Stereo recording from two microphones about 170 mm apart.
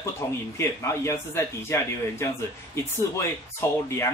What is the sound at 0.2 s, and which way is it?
A man's voice, 15° left (ahead or behind).